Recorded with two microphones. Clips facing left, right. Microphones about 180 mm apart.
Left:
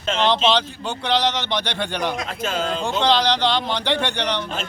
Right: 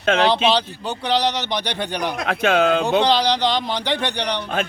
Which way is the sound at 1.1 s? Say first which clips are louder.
Right 1 dB; 40° right (ahead or behind).